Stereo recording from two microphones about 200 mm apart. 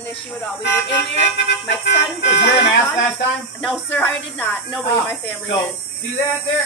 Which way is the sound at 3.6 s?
5° left (ahead or behind).